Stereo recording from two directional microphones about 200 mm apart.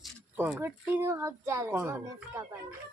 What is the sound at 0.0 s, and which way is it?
Speech, 5° right (ahead or behind).